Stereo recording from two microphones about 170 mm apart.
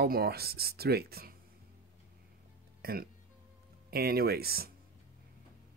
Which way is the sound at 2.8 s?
65° right (ahead or behind).